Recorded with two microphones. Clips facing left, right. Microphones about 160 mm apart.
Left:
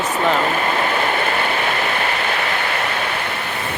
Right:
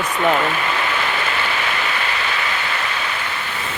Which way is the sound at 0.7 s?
45° left (ahead or behind).